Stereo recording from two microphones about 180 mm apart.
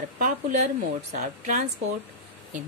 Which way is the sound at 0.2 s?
45° right (ahead or behind).